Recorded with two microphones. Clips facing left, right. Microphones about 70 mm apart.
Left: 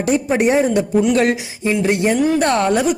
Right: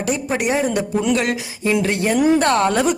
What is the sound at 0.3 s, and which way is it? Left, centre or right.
Speech, left.